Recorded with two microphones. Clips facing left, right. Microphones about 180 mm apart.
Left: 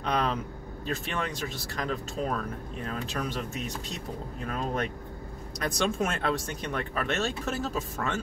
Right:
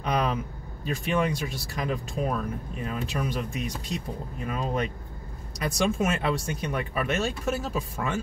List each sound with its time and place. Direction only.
0.0 s vehicle: 10° right (ahead or behind)
0.8 s speech: 10° right (ahead or behind)
5.6 s speech: 10° right (ahead or behind)